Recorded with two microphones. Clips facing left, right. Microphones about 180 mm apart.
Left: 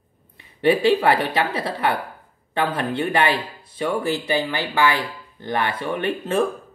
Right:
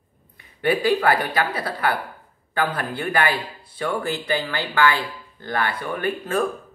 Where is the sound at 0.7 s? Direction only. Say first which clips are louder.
Left 3 dB; 25° left (ahead or behind).